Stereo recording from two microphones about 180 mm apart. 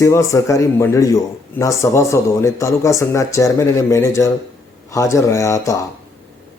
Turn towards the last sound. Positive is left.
turn(degrees=20)  # may be behind; listen again after turning